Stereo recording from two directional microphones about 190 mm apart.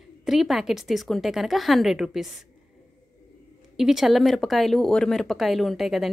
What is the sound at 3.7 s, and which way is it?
A woman's voice, centre (ahead or behind).